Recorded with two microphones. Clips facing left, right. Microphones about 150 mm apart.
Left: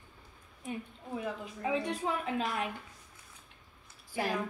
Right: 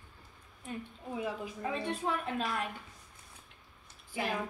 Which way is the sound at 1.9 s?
10° left (ahead or behind).